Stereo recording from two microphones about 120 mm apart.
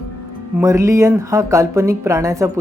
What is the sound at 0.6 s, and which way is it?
Speech, 25° right (ahead or behind).